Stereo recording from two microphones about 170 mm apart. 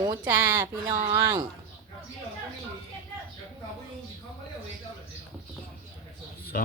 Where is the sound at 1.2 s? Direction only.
20° right (ahead or behind).